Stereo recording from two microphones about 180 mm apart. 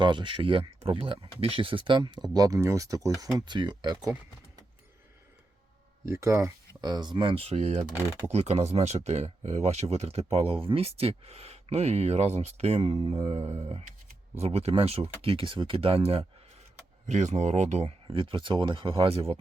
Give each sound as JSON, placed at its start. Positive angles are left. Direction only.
{"t": 0.0, "sound": "speech", "side_deg": -25}
{"t": 6.1, "sound": "speech", "side_deg": -15}